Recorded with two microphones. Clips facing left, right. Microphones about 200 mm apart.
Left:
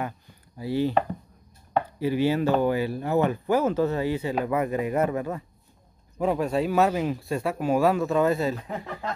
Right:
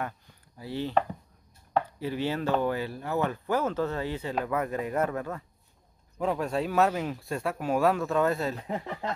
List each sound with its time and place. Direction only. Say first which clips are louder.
0.6 s speech: left 4 dB; 10° left (ahead or behind)
8.5 s speech: even; 25° right (ahead or behind)